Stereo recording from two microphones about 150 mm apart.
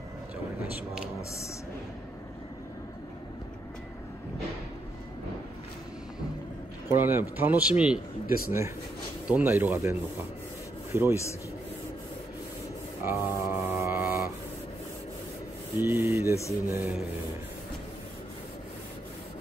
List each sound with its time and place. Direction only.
6.9 s a man's voice: 15° right (ahead or behind)
8.5 s a man's voice: 20° right (ahead or behind)
13.0 s mantra: 15° right (ahead or behind)
15.8 s a man's voice: 15° right (ahead or behind)